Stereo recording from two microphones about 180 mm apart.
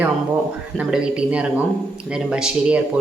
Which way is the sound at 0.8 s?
5° right (ahead or behind).